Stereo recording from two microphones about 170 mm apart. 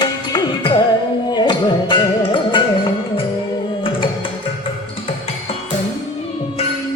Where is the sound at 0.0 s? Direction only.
25° left (ahead or behind).